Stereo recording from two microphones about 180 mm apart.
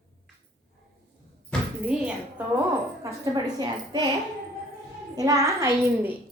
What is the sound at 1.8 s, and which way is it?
Speech, 5° right (ahead or behind).